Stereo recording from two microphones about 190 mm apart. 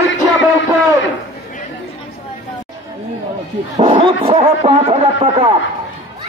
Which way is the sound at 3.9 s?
30° right (ahead or behind).